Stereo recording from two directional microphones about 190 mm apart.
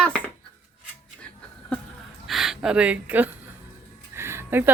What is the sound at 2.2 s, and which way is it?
Speech, centre (ahead or behind).